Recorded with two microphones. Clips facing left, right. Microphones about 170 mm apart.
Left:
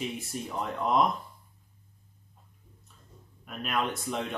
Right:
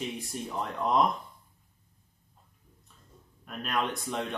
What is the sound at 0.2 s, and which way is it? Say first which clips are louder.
Speech: even; centre (ahead or behind).